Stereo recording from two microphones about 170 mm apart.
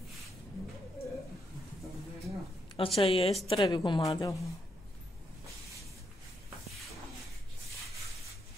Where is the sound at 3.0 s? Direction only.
35° left (ahead or behind).